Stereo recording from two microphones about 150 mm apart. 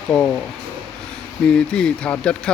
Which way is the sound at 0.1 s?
10° left (ahead or behind).